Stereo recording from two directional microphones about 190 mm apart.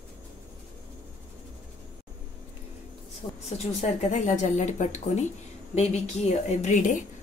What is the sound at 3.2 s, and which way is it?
Speech, 25° left (ahead or behind).